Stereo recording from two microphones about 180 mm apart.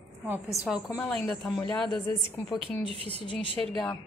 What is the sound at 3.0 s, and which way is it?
Speech, 30° left (ahead or behind).